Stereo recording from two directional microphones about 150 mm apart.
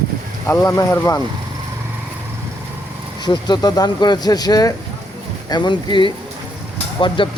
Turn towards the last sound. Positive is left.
turn(degrees=35)  # may be behind; listen again after turning